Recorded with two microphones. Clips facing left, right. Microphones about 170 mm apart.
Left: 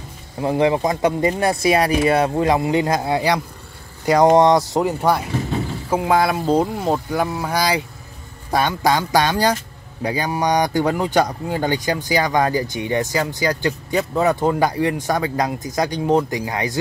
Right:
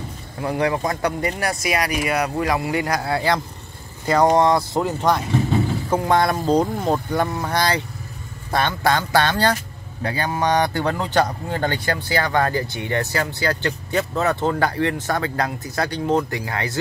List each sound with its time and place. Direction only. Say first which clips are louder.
0.4 s speech: left 4 dB; 25° left (ahead or behind)
5.9 s speech: left 3 dB; 10° left (ahead or behind)